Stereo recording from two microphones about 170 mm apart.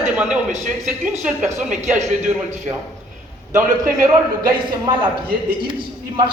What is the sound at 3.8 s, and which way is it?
A man's voice, 25° right (ahead or behind).